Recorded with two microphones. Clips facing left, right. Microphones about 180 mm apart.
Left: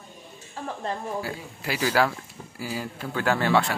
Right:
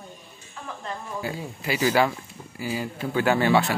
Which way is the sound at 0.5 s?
30° left (ahead or behind).